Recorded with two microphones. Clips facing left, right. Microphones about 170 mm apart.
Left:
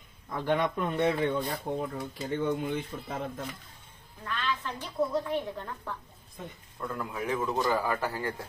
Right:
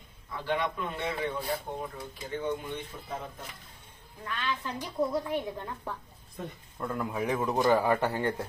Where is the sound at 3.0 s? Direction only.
90° left.